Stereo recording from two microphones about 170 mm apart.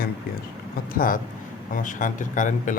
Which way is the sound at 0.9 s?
55° left (ahead or behind).